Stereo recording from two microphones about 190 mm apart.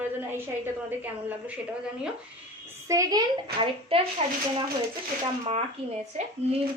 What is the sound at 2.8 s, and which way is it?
Speech, 15° right (ahead or behind).